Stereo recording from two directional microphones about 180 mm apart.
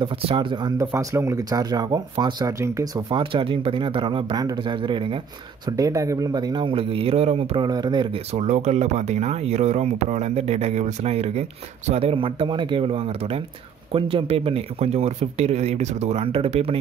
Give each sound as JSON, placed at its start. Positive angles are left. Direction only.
{"t": 0.0, "sound": "speech", "side_deg": -30}